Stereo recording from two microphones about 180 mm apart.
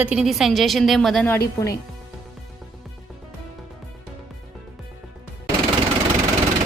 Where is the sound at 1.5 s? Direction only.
20° left (ahead or behind).